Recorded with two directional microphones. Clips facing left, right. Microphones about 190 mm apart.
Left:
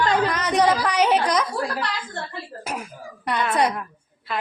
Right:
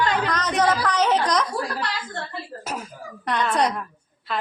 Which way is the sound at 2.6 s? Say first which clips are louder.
Even; 10° left (ahead or behind).